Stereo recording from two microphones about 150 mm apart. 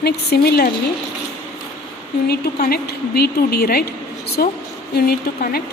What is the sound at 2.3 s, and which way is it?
Speech, 90° left.